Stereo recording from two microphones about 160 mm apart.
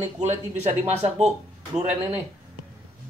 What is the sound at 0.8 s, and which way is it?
Speech, 45° right (ahead or behind).